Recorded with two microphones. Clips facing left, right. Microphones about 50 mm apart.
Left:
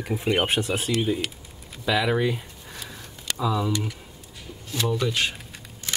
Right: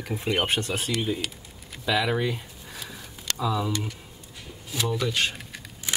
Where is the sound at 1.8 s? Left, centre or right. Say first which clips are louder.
Left 2 dB; centre.